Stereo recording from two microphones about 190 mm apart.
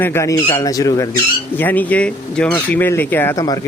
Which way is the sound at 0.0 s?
15° left (ahead or behind).